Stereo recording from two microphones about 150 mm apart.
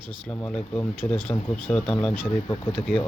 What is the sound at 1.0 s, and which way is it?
Speech, 25° left (ahead or behind).